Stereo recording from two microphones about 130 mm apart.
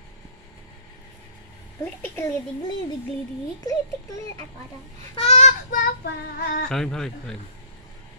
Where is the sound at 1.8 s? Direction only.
15° left (ahead or behind).